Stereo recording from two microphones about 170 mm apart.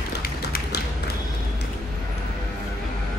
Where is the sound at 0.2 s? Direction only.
60° left (ahead or behind).